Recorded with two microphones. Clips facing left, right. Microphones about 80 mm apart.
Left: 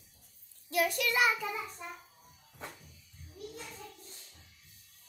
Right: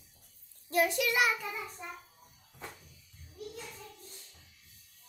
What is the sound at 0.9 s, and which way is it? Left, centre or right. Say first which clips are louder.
Speech: even; centre.